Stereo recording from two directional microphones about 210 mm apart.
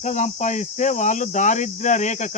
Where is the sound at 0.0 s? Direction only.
35° left (ahead or behind).